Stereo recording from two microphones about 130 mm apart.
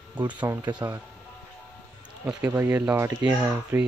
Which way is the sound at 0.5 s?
30° right (ahead or behind).